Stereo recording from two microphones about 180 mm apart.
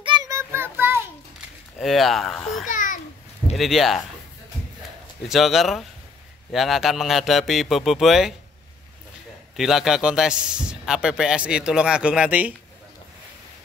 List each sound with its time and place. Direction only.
0.0 s child singing: 25° right (ahead or behind)
1.8 s a man's voice: centre (ahead or behind)
2.6 s babbling: 45° left (ahead or behind)
3.5 s a man's voice: centre (ahead or behind)
5.3 s a man's voice: centre (ahead or behind)
9.6 s a man's voice: centre (ahead or behind)